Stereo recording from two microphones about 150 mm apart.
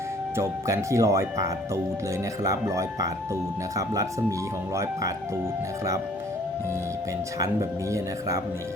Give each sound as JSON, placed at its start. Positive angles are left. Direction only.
{"t": 0.3, "sound": "speech", "side_deg": -20}
{"t": 7.3, "sound": "speech", "side_deg": -20}